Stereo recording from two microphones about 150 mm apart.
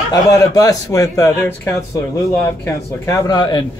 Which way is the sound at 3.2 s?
25° left (ahead or behind).